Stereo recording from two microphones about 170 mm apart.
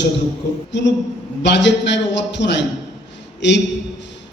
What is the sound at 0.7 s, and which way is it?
A man's voice, 90° left.